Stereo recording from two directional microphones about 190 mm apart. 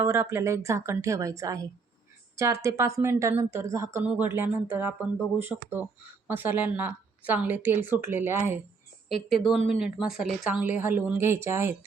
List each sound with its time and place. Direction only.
0.0 s a woman's voice: 15° right (ahead or behind)
9.6 s a woman's voice: 5° right (ahead or behind)